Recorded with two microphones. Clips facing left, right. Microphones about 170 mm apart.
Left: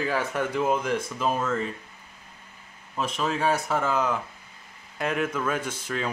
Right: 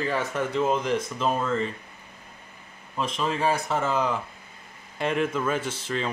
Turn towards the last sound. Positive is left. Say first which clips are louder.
# right 1 dB
turn(degrees=-25)  # may be behind; listen again after turning